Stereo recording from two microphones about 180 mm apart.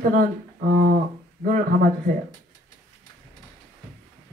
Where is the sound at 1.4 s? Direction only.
50° right (ahead or behind).